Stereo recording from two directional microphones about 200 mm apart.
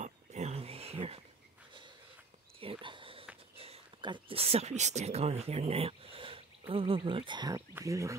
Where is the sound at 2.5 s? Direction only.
25° right (ahead or behind).